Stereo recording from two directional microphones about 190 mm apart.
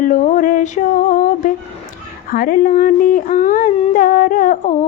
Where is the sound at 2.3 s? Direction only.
45° left (ahead or behind).